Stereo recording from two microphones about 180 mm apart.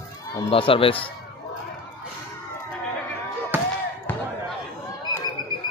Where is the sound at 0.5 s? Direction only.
30° left (ahead or behind).